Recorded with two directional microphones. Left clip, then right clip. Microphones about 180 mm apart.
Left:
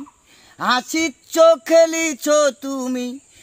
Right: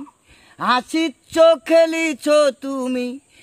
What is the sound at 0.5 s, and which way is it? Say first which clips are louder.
Speech: right 1 dB; 10° right (ahead or behind).